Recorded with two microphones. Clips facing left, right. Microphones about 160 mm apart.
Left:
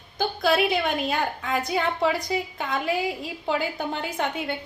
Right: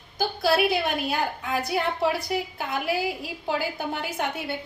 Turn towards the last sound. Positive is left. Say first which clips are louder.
# left 1 dB
turn(degrees=-5)  # may be behind; listen again after turning